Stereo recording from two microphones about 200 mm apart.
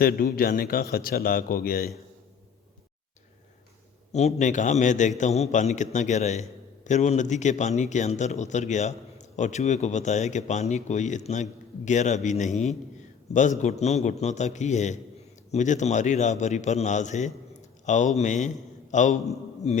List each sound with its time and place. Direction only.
0.0 s a man's voice: 50° left (ahead or behind)
4.1 s a man's voice: 35° left (ahead or behind)